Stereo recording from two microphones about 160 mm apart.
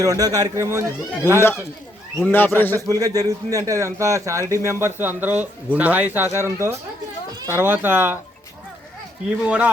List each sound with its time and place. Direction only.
0.0 s a man's voice: 20° right (ahead or behind)
1.4 s a man's voice: 15° left (ahead or behind)
2.7 s a man's voice: 20° right (ahead or behind)